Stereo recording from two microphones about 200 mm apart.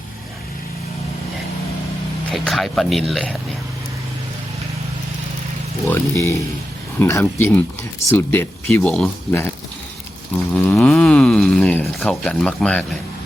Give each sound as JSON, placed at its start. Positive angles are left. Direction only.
{"t": 2.3, "sound": "speech", "side_deg": 0}
{"t": 6.1, "sound": "speech", "side_deg": 15}
{"t": 10.5, "sound": "speech", "side_deg": 5}